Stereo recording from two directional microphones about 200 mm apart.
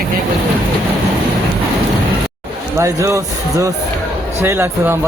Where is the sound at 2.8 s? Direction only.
15° right (ahead or behind).